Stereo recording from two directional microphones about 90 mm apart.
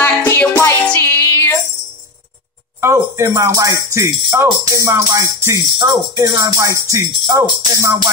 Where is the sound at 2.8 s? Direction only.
30° right (ahead or behind).